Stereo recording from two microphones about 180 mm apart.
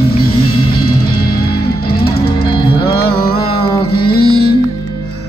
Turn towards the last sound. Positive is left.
turn(degrees=60)  # may be behind; listen again after turning